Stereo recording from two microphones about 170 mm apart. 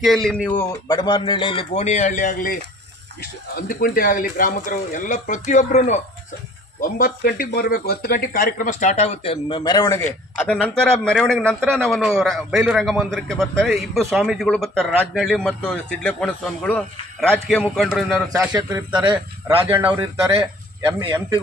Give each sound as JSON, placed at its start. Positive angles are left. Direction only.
{"t": 0.0, "sound": "a man's voice", "side_deg": 0}
{"t": 10.3, "sound": "speech", "side_deg": 10}
{"t": 19.7, "sound": "speech", "side_deg": -10}
{"t": 20.8, "sound": "speech", "side_deg": -20}